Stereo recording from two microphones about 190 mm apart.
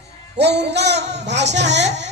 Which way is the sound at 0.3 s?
60° right (ahead or behind).